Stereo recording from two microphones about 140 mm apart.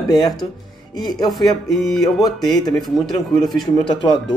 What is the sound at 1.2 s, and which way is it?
Speech, centre (ahead or behind).